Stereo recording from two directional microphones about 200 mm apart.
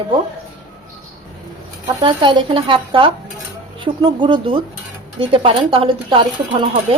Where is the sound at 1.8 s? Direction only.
25° right (ahead or behind).